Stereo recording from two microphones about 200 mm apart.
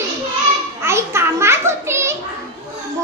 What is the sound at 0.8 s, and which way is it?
Children playing, 15° right (ahead or behind).